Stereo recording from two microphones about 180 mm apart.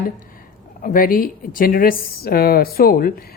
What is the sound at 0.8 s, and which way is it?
A woman's voice, 50° left (ahead or behind).